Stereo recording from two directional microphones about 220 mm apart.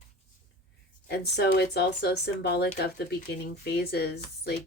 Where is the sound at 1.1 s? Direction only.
50° left (ahead or behind).